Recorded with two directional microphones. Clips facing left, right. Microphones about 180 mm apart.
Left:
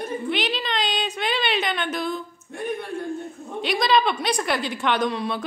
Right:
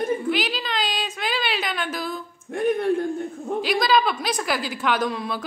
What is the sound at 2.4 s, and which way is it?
Speech, 65° right (ahead or behind).